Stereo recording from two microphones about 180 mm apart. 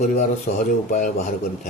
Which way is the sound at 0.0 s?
45° left (ahead or behind).